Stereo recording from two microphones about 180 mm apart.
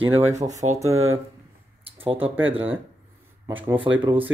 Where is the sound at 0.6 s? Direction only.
40° right (ahead or behind).